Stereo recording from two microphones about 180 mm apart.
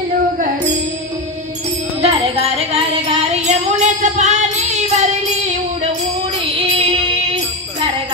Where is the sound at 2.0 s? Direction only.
35° right (ahead or behind).